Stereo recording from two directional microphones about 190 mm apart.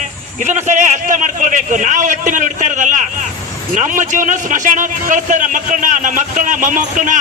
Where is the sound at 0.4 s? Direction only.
40° right (ahead or behind).